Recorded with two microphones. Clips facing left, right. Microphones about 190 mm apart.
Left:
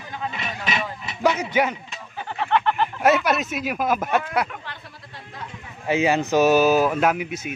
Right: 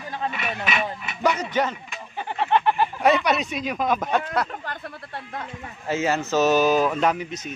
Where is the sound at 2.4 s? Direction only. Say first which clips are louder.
Right 1 dB; 15° right (ahead or behind).